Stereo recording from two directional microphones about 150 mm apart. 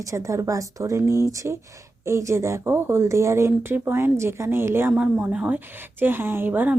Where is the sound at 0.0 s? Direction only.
20° right (ahead or behind).